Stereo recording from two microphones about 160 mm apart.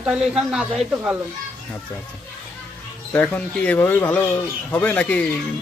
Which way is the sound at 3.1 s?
10° left (ahead or behind).